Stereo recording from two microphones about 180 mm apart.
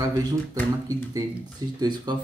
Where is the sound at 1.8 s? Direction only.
25° right (ahead or behind).